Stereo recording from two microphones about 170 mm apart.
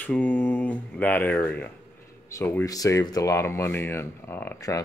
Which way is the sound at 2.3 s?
15° left (ahead or behind).